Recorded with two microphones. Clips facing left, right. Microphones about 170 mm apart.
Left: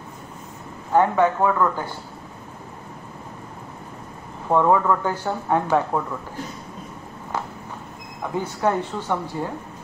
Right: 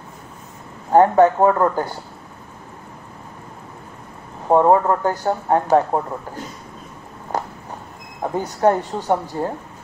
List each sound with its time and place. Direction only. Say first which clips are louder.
0.9 s speech: right 5 dB; 40° right (ahead or behind)
4.5 s speech: right 4 dB; 40° right (ahead or behind)
8.2 s speech: right 5 dB; 35° right (ahead or behind)